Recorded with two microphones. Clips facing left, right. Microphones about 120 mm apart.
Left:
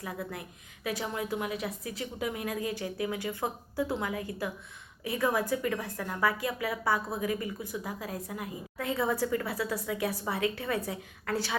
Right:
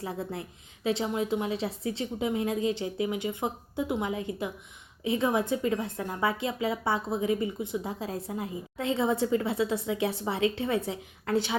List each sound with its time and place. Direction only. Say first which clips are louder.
0.0 s a woman's voice: right 3 dB; 30° right (ahead or behind)